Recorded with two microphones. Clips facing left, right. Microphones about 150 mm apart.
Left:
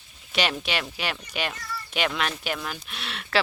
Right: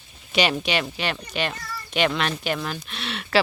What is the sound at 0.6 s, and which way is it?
Speech, centre (ahead or behind).